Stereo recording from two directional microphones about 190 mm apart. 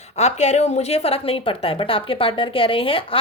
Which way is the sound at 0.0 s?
35° left (ahead or behind).